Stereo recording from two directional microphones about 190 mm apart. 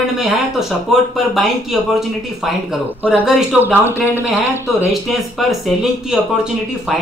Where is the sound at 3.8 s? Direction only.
15° left (ahead or behind).